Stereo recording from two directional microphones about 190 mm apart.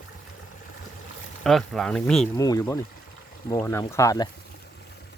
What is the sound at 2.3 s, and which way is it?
Speech, 20° left (ahead or behind).